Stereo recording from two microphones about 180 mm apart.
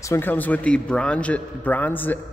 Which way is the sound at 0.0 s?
15° left (ahead or behind).